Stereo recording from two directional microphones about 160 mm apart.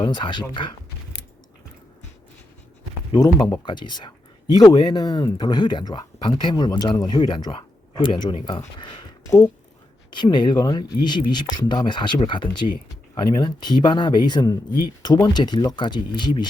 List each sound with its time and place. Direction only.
0.0 s speech: 25° left (ahead or behind)
3.3 s speech: 25° left (ahead or behind)